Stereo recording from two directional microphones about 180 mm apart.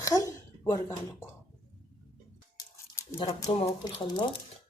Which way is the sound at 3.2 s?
25° left (ahead or behind).